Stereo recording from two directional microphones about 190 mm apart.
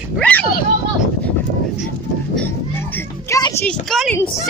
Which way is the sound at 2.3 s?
10° left (ahead or behind).